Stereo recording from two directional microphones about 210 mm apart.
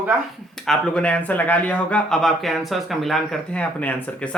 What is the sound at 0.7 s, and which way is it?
A man's voice, 5° left (ahead or behind).